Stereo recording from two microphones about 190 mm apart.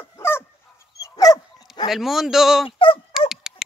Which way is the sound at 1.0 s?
20° left (ahead or behind).